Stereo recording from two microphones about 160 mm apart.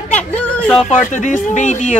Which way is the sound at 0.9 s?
50° left (ahead or behind).